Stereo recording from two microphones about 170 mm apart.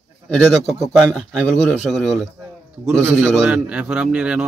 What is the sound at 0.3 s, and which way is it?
A man's voice, centre (ahead or behind).